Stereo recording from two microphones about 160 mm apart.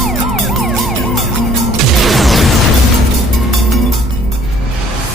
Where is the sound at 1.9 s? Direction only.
Centre (ahead or behind).